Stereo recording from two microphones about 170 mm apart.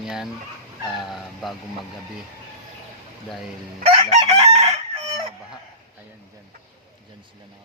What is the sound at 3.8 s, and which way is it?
Chicken, 35° right (ahead or behind).